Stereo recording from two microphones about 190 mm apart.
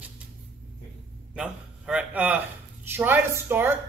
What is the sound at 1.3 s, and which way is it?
A man's voice, 5° right (ahead or behind).